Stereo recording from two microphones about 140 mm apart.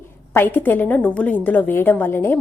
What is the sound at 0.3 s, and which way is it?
A woman's voice, 15° left (ahead or behind).